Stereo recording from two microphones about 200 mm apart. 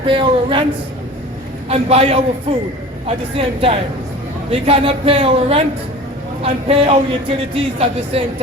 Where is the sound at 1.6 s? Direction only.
30° right (ahead or behind).